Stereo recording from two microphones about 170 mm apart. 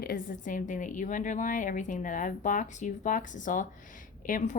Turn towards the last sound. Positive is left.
turn(degrees=50)  # may be behind; listen again after turning